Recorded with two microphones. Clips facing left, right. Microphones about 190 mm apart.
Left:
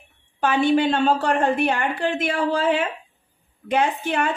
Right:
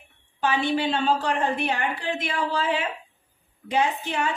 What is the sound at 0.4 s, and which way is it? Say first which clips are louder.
Speech: left 5 dB; 50° left (ahead or behind).